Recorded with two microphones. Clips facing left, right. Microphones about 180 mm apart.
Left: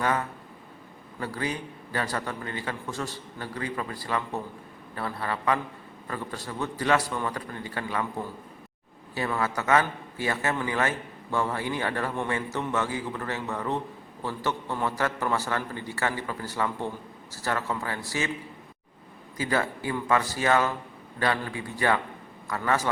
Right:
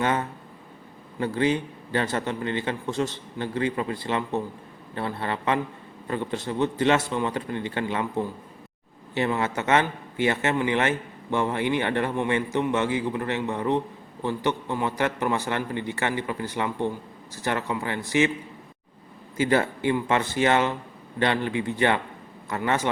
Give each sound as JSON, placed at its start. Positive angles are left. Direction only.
{"t": 0.0, "sound": "a man's voice", "side_deg": -25}
{"t": 19.4, "sound": "a man's voice", "side_deg": -25}